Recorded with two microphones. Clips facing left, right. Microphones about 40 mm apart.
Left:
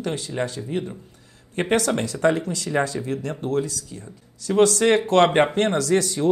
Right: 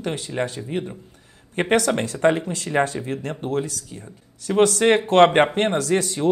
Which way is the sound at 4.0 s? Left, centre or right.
Right.